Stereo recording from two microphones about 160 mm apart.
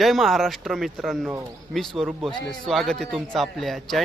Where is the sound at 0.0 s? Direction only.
Centre (ahead or behind).